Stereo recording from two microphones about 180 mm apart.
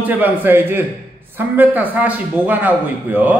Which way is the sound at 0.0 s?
10° right (ahead or behind).